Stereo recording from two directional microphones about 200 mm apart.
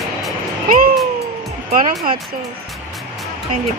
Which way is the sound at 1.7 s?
45° right (ahead or behind).